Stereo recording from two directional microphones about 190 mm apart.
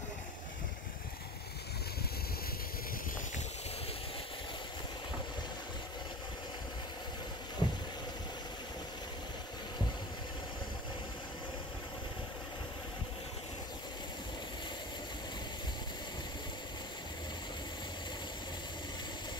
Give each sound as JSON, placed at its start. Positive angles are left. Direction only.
{"t": 7.6, "sound": "vehicle", "side_deg": 25}